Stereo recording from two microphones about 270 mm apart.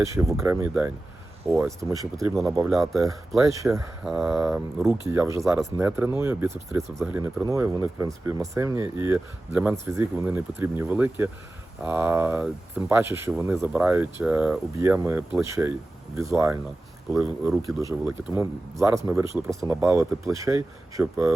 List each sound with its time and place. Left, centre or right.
0.0 s speech: centre
2.1 s speech: centre
3.4 s speech: centre
17.7 s speech: centre